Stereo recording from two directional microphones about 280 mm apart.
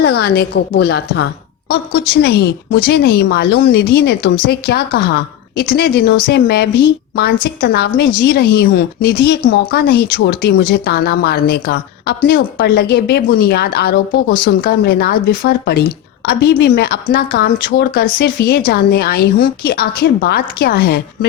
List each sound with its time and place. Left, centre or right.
0.0 s speech: left